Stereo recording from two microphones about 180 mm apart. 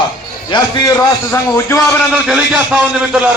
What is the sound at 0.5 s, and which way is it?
A man's voice, 15° left (ahead or behind).